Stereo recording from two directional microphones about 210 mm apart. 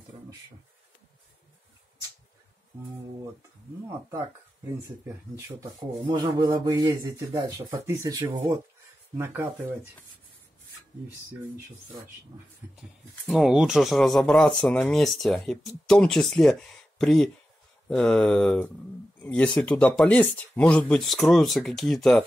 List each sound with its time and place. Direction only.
4.6 s speech: 15° right (ahead or behind)
6.0 s a sound: 20° right (ahead or behind)
6.9 s speech: 15° right (ahead or behind)
13.3 s speech: 5° right (ahead or behind)